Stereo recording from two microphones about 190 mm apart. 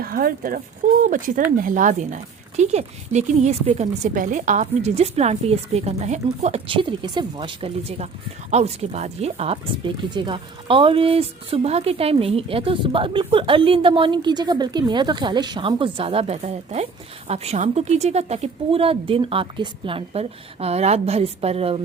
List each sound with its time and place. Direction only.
0.0 s speech: 50° right (ahead or behind); by 21.8 s 30° right (ahead or behind)